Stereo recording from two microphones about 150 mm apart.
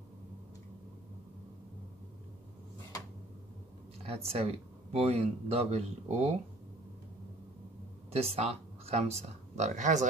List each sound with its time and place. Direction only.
4.0 s speech: 40° right (ahead or behind)
8.1 s speech: 40° right (ahead or behind)